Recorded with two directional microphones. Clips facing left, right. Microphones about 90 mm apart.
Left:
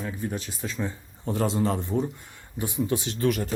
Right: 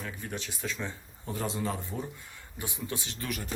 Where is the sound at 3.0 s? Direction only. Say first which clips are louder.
Left 12 dB; 55° left (ahead or behind).